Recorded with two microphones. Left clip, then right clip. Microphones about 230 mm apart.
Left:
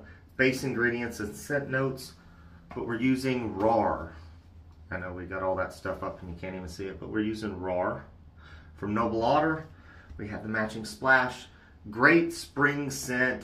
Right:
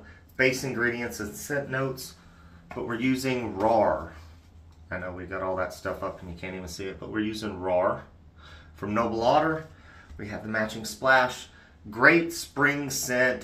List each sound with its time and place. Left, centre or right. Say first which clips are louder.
0.4 s speech: right 1 dB; centre
4.8 s speech: right 2 dB; centre
6.6 s speech: right 2 dB; centre
8.7 s speech: right 2 dB; centre